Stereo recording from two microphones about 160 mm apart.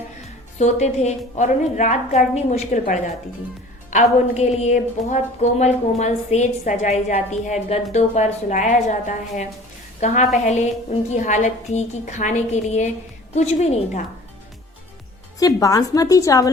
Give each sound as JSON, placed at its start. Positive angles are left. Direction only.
{"t": 0.6, "sound": "a woman's voice", "side_deg": 45}
{"t": 15.4, "sound": "a woman's voice", "side_deg": 20}